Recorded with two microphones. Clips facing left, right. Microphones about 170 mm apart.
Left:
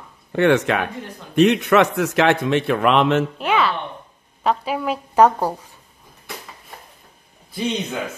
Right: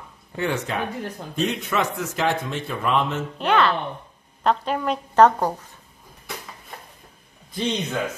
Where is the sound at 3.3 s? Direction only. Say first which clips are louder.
Even; 5° left (ahead or behind).